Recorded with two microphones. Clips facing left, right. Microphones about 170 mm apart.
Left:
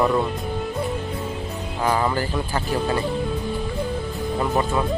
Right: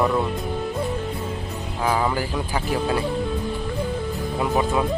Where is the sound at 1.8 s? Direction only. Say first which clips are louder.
Left 1 dB; 5° right (ahead or behind).